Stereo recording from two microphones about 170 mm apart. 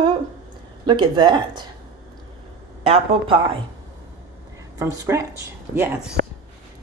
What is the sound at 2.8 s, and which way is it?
Speech, 35° right (ahead or behind).